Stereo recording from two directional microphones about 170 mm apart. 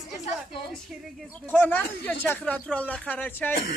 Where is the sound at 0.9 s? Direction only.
5° right (ahead or behind).